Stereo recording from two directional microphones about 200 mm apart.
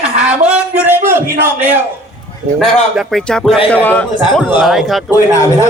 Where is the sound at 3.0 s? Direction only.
Centre (ahead or behind).